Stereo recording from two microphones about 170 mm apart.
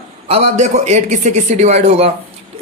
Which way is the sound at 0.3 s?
40° right (ahead or behind).